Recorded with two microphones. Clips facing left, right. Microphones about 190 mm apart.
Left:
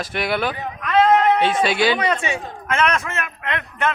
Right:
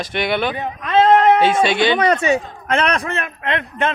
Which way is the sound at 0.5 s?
25° right (ahead or behind).